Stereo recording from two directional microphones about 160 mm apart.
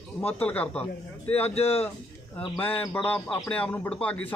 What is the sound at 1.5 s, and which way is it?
Speech, 40° left (ahead or behind).